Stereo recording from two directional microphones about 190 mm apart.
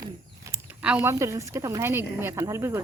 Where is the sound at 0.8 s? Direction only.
10° right (ahead or behind).